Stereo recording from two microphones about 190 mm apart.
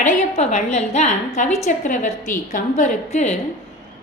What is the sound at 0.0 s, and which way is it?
A woman's voice, 40° left (ahead or behind).